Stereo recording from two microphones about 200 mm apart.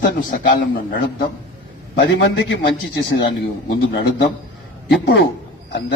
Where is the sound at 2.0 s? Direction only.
60° left (ahead or behind).